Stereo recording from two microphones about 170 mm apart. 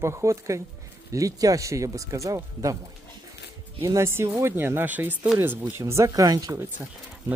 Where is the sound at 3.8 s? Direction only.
15° right (ahead or behind).